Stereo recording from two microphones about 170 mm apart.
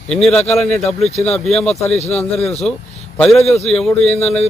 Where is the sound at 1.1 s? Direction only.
40° left (ahead or behind).